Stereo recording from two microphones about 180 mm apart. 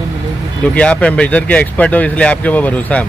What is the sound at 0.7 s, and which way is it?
Speech, 5° left (ahead or behind).